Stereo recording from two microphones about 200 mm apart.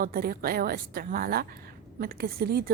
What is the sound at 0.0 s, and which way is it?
A woman's voice, 45° right (ahead or behind).